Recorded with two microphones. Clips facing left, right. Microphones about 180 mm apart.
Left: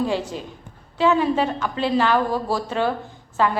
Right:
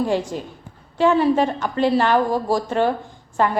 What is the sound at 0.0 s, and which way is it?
A woman's voice, 10° right (ahead or behind).